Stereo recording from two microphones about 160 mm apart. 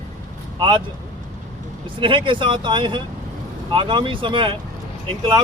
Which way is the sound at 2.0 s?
30° right (ahead or behind).